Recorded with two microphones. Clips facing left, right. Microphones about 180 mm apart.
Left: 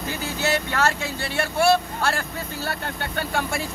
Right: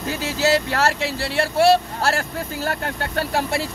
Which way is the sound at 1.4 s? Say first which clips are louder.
Right 4 dB; 35° right (ahead or behind).